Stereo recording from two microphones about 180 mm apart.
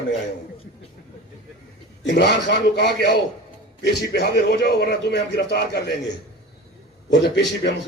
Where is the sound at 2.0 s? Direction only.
70° left (ahead or behind).